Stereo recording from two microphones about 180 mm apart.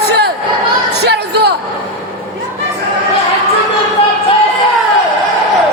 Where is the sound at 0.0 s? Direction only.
65° right (ahead or behind).